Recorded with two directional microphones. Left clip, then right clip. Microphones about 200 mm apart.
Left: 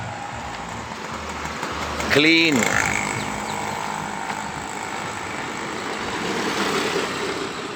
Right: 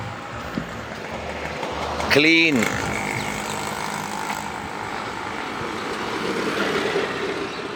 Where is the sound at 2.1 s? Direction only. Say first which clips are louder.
Even; 25° right (ahead or behind).